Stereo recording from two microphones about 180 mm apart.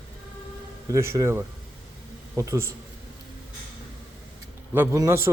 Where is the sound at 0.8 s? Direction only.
15° right (ahead or behind).